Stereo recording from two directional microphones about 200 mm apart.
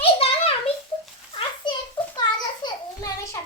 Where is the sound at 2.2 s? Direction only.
20° left (ahead or behind).